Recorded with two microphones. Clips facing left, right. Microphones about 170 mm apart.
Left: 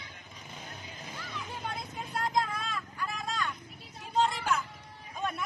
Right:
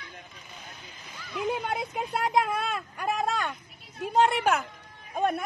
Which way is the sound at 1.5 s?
65° right (ahead or behind).